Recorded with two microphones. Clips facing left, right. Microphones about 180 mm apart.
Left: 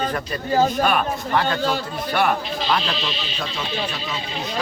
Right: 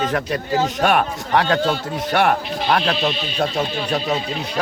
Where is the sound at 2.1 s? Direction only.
60° right (ahead or behind).